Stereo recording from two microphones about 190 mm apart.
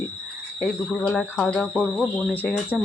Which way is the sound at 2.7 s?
5° right (ahead or behind).